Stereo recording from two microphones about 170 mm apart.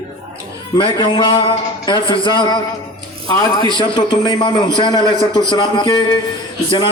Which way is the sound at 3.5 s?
25° left (ahead or behind).